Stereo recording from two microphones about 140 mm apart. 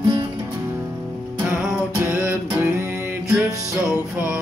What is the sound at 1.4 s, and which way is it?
Music, 15° right (ahead or behind).